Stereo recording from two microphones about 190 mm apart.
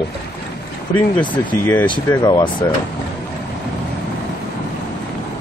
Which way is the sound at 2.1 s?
20° left (ahead or behind).